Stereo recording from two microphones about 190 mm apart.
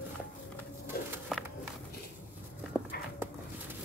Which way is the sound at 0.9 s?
55° left (ahead or behind).